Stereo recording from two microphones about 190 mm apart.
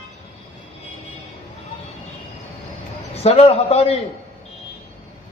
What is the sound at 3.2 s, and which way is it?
Speech, 35° left (ahead or behind).